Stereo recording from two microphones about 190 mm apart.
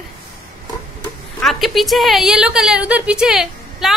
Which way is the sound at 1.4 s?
Centre (ahead or behind).